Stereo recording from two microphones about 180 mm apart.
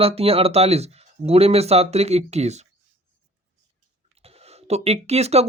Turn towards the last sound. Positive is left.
turn(degrees=-35)  # may be behind; listen again after turning